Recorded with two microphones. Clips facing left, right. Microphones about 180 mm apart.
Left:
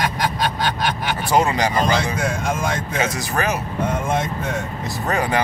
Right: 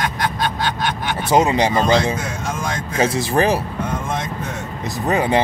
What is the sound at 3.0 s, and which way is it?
Speech, 30° right (ahead or behind).